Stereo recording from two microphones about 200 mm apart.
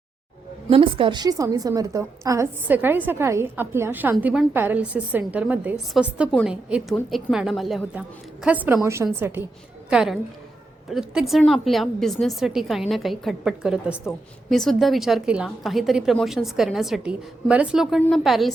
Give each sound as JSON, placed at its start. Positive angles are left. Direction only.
{"t": 0.7, "sound": "a woman's voice", "side_deg": -25}